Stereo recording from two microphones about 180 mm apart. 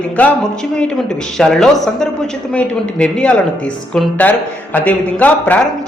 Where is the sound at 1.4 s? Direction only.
Centre (ahead or behind).